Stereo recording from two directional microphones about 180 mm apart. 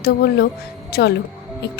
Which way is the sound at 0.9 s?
60° left (ahead or behind).